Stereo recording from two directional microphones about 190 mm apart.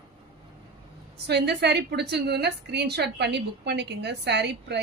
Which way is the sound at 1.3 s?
60° right (ahead or behind).